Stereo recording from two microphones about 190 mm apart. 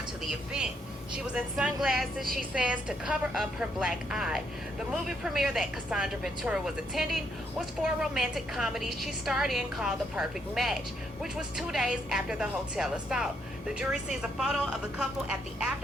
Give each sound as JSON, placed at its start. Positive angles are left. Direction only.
{"t": 0.3, "sound": "a woman's voice", "side_deg": -5}